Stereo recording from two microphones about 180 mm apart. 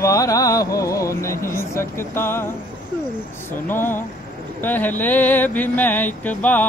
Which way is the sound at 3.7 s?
10° left (ahead or behind).